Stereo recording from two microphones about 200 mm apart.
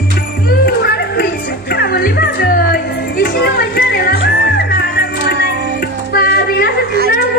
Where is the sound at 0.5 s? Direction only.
50° left (ahead or behind).